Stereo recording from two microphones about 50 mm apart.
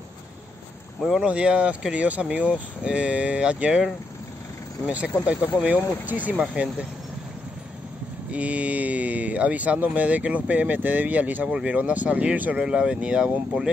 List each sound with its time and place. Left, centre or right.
1.2 s speech: right
5.2 s speech: right
8.3 s speech: right
11.4 s speech: right